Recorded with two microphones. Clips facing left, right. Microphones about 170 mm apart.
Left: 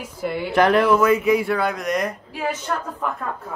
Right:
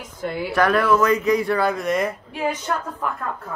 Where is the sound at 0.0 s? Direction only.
5° left (ahead or behind).